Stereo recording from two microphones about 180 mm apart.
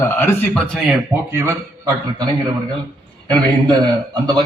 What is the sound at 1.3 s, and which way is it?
Speech, 15° right (ahead or behind).